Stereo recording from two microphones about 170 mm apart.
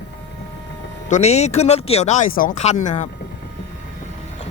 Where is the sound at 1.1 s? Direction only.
40° left (ahead or behind).